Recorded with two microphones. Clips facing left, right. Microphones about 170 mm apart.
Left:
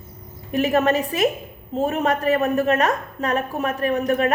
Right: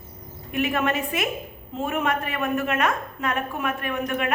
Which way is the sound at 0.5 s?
40° left (ahead or behind).